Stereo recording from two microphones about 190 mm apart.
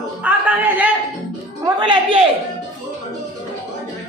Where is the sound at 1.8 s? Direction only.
25° right (ahead or behind).